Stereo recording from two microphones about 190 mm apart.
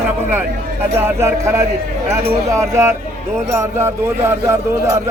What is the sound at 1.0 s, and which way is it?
Speech, 15° right (ahead or behind).